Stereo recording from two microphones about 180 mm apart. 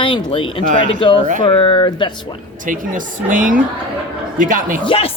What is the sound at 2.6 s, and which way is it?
Speech, 50° right (ahead or behind).